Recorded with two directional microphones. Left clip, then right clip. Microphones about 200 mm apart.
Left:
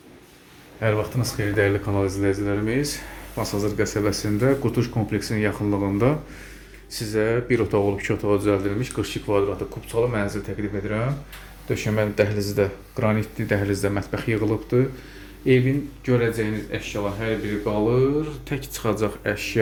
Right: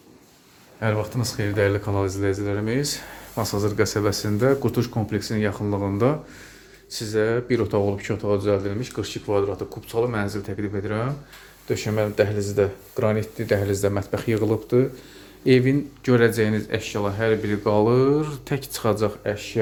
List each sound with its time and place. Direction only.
0.8 s speech: 10° right (ahead or behind)
9.9 s speech: 15° right (ahead or behind)
15.4 s speech: 25° right (ahead or behind)
16.0 s speech: 45° right (ahead or behind); by 19.1 s 20° right (ahead or behind)
19.2 s speech: centre (ahead or behind)